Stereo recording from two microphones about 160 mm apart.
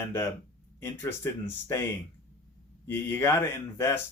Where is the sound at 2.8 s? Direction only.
15° left (ahead or behind).